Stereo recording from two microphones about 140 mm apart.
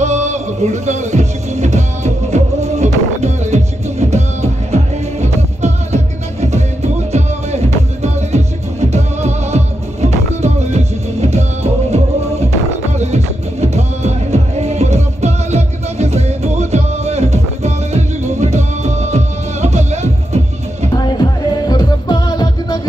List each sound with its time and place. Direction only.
0.0 s music: 55° right (ahead or behind)
7.1 s music: 50° right (ahead or behind)
21.0 s music: 30° left (ahead or behind)